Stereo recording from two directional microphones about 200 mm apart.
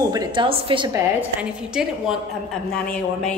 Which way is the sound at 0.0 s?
20° right (ahead or behind).